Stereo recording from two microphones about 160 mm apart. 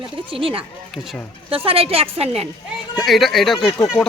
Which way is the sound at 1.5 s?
35° right (ahead or behind).